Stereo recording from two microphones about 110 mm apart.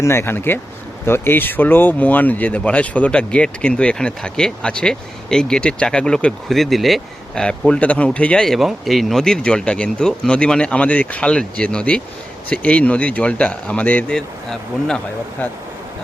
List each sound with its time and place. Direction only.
0.0 s speech: 25° left (ahead or behind); by 15.0 s 5° left (ahead or behind)